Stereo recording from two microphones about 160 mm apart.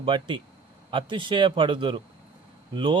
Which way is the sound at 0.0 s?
30° right (ahead or behind).